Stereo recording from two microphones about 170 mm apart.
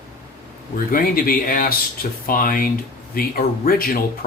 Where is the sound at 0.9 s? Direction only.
60° left (ahead or behind).